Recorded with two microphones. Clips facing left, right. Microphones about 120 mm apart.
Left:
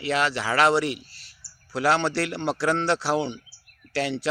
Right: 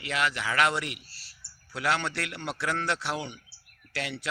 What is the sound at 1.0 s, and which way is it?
Speech, 35° right (ahead or behind).